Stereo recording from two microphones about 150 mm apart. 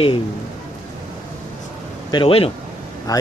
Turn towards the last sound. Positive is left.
turn(degrees=25)  # may be behind; listen again after turning